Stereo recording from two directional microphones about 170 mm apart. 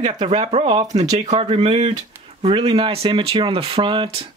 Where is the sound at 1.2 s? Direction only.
40° right (ahead or behind).